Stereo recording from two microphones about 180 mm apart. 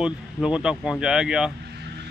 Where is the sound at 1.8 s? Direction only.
65° right (ahead or behind).